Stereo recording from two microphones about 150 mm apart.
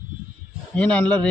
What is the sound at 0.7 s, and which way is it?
Speech, 10° left (ahead or behind).